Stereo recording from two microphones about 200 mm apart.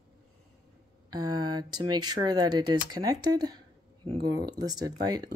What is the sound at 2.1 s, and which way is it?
Speech, 20° right (ahead or behind).